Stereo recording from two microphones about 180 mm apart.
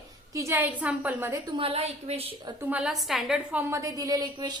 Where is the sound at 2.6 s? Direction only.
10° right (ahead or behind).